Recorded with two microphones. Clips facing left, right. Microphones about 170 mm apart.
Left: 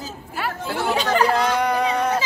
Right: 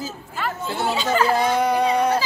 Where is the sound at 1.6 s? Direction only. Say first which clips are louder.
Right 2 dB; 5° right (ahead or behind).